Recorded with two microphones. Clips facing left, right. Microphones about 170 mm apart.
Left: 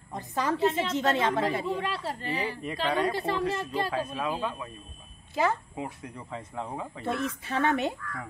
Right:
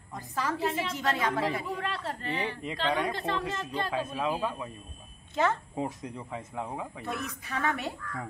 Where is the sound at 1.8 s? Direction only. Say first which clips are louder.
Left 2 dB; 5° left (ahead or behind).